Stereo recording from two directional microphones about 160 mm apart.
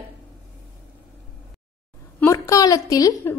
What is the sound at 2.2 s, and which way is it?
A woman's voice, 15° left (ahead or behind).